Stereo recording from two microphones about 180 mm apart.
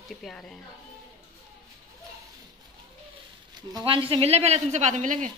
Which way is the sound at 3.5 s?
25° right (ahead or behind).